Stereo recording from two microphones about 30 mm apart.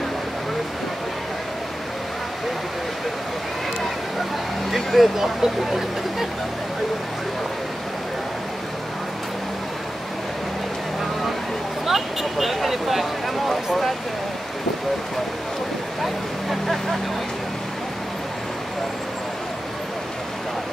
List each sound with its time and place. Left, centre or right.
4.6 s speech: centre
5.1 s speech: centre
11.8 s speech: centre
16.0 s speech: centre